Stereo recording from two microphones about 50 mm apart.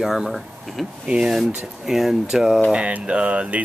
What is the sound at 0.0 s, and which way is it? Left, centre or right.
Speech, centre.